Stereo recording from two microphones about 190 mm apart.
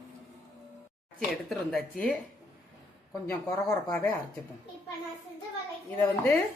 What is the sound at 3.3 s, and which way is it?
Speech, 10° left (ahead or behind).